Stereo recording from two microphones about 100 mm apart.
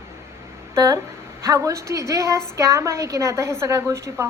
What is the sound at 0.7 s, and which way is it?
A woman's voice, 35° right (ahead or behind).